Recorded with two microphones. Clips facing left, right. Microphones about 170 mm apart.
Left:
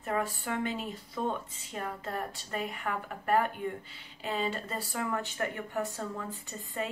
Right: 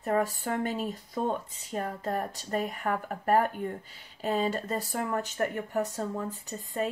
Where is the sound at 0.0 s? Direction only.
40° right (ahead or behind).